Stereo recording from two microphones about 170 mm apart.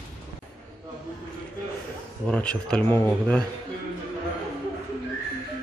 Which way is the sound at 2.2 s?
5° left (ahead or behind).